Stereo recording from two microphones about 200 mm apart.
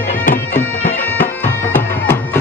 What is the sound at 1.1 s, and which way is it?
Music, 10° left (ahead or behind).